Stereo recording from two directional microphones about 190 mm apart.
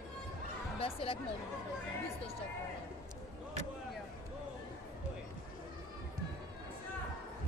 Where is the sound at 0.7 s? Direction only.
30° left (ahead or behind).